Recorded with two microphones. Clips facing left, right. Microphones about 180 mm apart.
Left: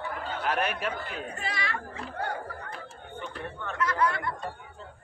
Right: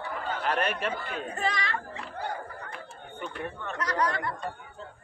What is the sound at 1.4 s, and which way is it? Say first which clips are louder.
Speech: right 5 dB; 40° right (ahead or behind).